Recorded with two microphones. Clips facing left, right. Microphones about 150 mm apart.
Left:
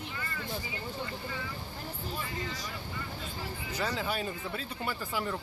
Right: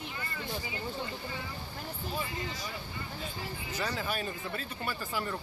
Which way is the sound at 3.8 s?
15° left (ahead or behind).